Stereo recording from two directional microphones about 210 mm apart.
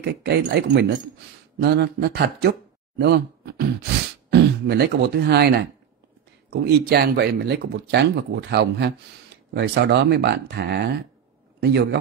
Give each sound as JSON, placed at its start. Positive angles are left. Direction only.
{"t": 0.0, "sound": "speech", "side_deg": -55}